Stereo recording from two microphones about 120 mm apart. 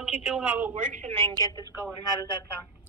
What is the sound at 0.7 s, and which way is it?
Speech, 90° right.